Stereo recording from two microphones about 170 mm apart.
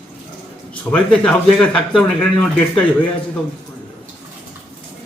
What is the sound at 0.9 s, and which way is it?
Speech, 5° left (ahead or behind).